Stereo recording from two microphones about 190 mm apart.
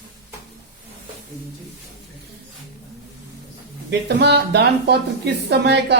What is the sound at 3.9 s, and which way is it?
Speech, 60° right (ahead or behind).